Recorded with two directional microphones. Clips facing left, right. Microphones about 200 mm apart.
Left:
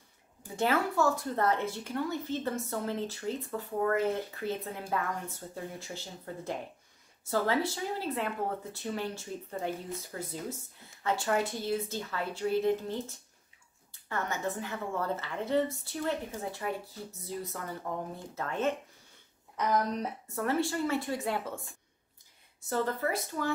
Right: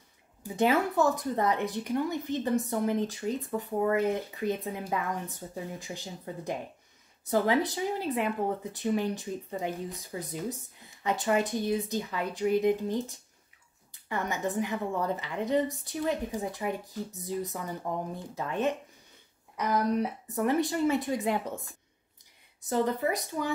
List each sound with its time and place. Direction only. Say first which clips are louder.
0.6 s speech: right 3 dB; 15° right (ahead or behind)